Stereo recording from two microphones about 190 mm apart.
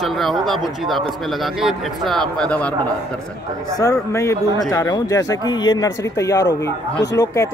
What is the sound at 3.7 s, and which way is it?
A man's voice, 20° left (ahead or behind).